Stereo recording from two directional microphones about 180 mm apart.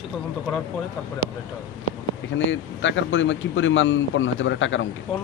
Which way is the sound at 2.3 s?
90° left.